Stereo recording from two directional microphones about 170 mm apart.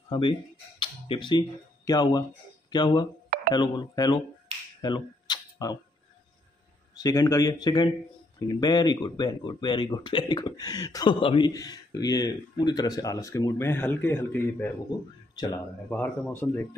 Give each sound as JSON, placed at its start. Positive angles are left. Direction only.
{"t": 0.1, "sound": "speech", "side_deg": 30}
{"t": 4.8, "sound": "camera", "side_deg": 25}
{"t": 7.0, "sound": "speech", "side_deg": 20}
{"t": 14.9, "sound": "speech", "side_deg": 25}
{"t": 15.9, "sound": "speech", "side_deg": 10}